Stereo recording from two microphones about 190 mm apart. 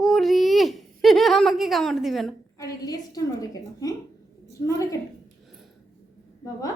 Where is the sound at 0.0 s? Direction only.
Centre (ahead or behind).